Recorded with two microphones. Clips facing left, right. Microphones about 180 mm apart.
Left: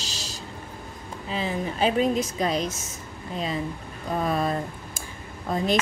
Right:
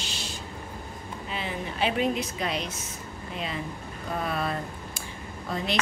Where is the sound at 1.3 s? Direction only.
40° left (ahead or behind).